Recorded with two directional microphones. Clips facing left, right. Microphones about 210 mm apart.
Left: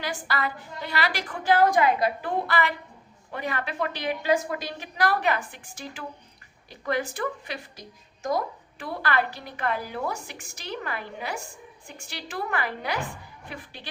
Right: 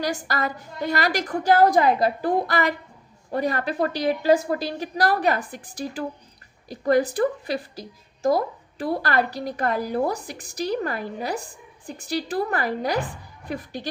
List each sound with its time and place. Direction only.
0.0 s a woman's voice: 40° right (ahead or behind)